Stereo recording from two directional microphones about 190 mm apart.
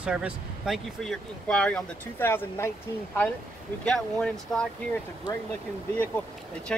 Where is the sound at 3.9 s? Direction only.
5° left (ahead or behind).